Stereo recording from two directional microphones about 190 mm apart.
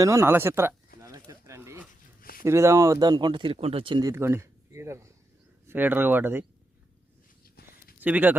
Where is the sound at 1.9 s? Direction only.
50° left (ahead or behind).